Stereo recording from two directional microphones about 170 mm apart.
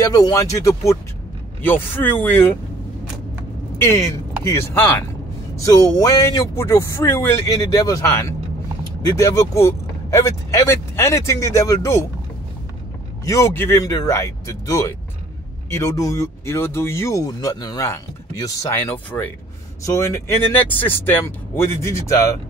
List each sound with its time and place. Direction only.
0.0 s speech: 20° left (ahead or behind)
3.7 s speech: 15° left (ahead or behind)
13.2 s speech: 20° left (ahead or behind)